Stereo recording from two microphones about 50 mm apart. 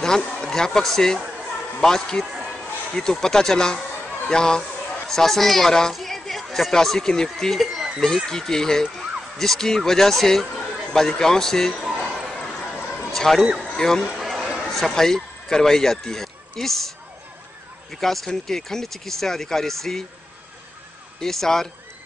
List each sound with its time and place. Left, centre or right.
0.0 s a man's voice: centre
5.9 s a sound: centre
6.5 s speech: centre
7.6 s a sound: centre
8.3 s speech: centre
11.8 s a sound: centre
12.9 s a sound: centre
13.6 s a man's voice: centre
14.2 s chatter: centre
14.8 s speech: centre
18.0 s speech: centre
21.2 s speech: centre